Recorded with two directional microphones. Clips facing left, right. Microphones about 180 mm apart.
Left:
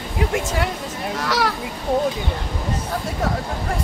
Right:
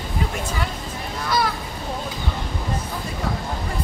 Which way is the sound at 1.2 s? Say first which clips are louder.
Even; 80° left.